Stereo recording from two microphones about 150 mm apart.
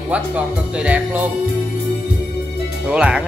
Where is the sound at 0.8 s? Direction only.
10° right (ahead or behind).